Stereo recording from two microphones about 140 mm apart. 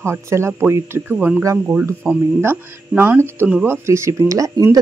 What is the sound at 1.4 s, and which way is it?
Speech, 20° right (ahead or behind).